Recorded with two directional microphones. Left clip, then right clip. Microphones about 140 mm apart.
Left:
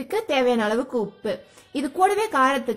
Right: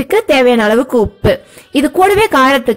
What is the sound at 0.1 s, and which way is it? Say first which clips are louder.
A woman's voice: right 12 dB; 30° right (ahead or behind).